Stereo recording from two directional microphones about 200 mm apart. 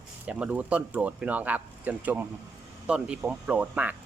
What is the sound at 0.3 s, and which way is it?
Speech, 5° right (ahead or behind).